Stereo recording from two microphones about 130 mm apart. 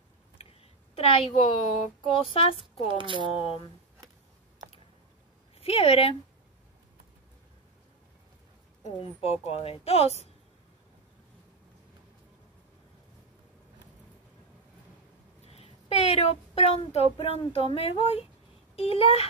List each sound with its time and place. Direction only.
0.4 s a sound: 45° left (ahead or behind)
2.0 s a woman's voice: 45° left (ahead or behind)
3.0 s speech: 40° right (ahead or behind)
3.3 s a woman's voice: 45° left (ahead or behind)
5.6 s a woman's voice: 50° left (ahead or behind)
8.9 s a woman's voice: 50° left (ahead or behind)
15.4 s a woman's voice: 55° left (ahead or behind)